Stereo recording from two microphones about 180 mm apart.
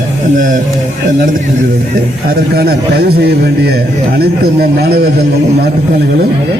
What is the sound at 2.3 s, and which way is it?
A man's voice, 60° right (ahead or behind).